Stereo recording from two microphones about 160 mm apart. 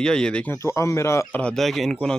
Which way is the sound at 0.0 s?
5° left (ahead or behind).